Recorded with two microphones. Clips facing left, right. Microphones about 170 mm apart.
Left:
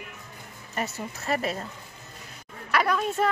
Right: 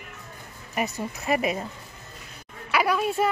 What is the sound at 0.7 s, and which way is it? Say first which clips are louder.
Speech: right 3 dB; 15° right (ahead or behind).